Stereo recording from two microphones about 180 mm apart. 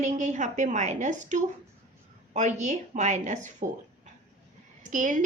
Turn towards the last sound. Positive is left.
turn(degrees=-45)  # may be behind; listen again after turning